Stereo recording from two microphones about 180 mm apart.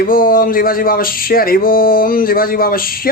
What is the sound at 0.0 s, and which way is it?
Speech, 50° left (ahead or behind).